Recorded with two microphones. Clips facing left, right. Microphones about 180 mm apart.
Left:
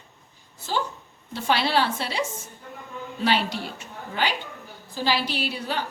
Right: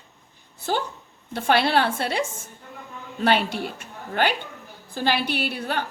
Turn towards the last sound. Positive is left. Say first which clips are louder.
# right 2 dB
turn(degrees=-55)  # may be behind; listen again after turning